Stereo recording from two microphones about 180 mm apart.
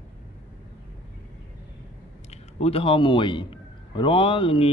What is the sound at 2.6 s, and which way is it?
A man's voice, 30° left (ahead or behind).